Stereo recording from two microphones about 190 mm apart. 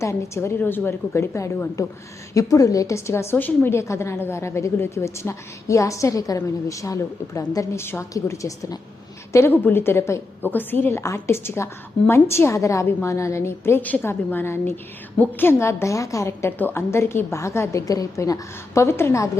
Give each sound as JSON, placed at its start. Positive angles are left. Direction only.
{"t": 0.0, "sound": "a woman's voice", "side_deg": 15}